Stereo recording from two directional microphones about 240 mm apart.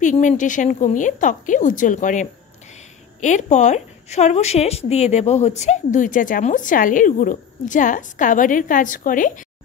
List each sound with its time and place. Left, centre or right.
0.0 s a woman's voice: left